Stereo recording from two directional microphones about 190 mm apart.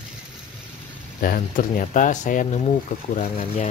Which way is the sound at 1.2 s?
45° left (ahead or behind).